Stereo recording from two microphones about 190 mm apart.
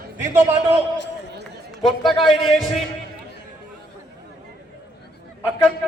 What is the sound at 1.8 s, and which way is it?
Speech, centre (ahead or behind).